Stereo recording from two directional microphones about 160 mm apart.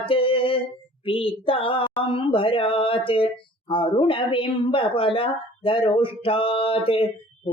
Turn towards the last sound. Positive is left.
turn(degrees=35)  # may be behind; listen again after turning